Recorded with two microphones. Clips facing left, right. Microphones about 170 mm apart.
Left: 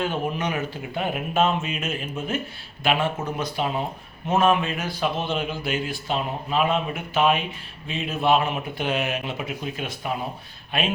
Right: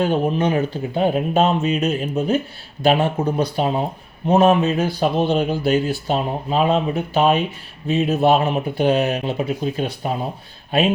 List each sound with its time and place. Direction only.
0.0 s speech: 35° right (ahead or behind)